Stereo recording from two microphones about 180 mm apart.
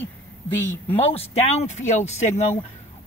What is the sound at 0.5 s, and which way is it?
Speech, 10° left (ahead or behind).